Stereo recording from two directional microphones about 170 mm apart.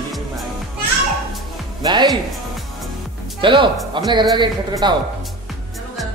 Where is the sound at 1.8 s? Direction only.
25° right (ahead or behind).